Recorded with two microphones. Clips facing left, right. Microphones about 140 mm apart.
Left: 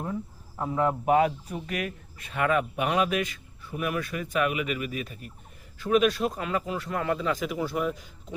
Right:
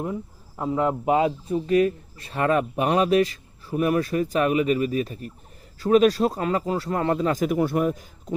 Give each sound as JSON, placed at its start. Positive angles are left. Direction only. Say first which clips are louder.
{"t": 0.0, "sound": "speech", "louder": "right 3 dB", "side_deg": -20}